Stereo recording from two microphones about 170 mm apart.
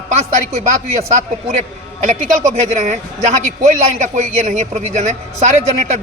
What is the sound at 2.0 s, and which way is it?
Speech, 45° right (ahead or behind).